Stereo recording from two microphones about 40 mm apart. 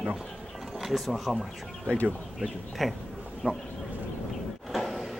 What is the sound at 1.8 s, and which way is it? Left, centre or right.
Speech, left.